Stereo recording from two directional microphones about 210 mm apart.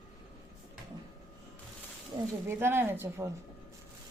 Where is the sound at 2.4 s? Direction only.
10° right (ahead or behind).